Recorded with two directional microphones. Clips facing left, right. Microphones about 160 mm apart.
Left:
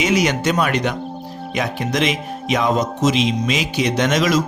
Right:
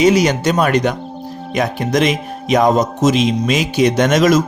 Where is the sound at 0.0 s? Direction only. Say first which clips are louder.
Right 5 dB; 35° right (ahead or behind).